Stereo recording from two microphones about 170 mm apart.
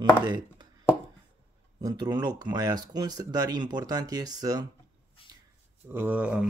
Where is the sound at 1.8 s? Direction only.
20° right (ahead or behind).